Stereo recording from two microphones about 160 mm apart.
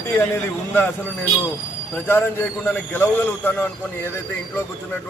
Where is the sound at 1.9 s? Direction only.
15° left (ahead or behind).